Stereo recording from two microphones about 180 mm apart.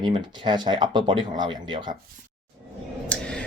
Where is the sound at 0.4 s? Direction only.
25° right (ahead or behind).